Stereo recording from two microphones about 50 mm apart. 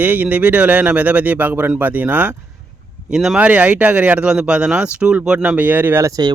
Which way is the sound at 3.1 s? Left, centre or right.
Centre.